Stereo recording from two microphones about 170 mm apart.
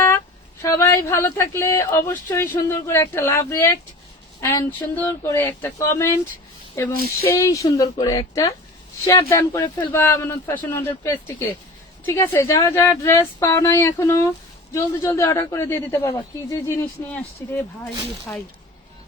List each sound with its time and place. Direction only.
0.6 s speech: 15° left (ahead or behind)
7.3 s speech: 20° left (ahead or behind)